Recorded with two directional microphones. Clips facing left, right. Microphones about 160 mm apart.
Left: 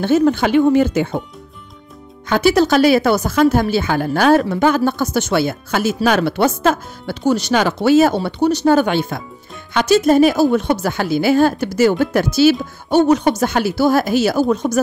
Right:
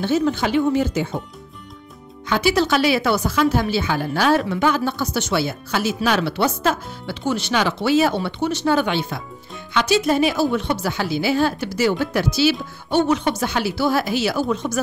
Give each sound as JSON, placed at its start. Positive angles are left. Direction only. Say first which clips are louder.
{"t": 0.0, "sound": "speech", "louder": "left 5 dB", "side_deg": 50}
{"t": 2.2, "sound": "a woman's voice", "louder": "left 5 dB", "side_deg": 45}